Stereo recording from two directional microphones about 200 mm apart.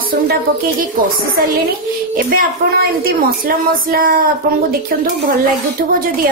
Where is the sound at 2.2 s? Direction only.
45° right (ahead or behind).